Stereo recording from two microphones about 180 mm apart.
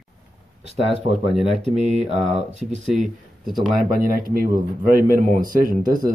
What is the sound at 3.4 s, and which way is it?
Speech, centre (ahead or behind).